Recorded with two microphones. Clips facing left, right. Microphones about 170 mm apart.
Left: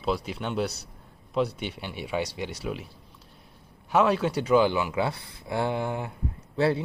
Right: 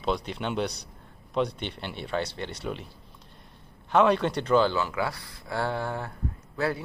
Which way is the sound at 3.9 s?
5° left (ahead or behind).